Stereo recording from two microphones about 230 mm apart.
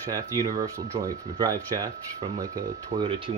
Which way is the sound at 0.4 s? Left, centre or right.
Centre.